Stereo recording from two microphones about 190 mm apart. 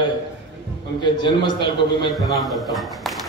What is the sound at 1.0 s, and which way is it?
Speech, 25° left (ahead or behind).